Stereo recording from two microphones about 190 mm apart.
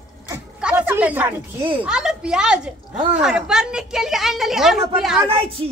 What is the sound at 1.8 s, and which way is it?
A woman's voice, 5° right (ahead or behind).